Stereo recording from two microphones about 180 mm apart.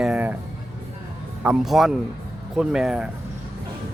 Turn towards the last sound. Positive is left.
turn(degrees=-5)  # may be behind; listen again after turning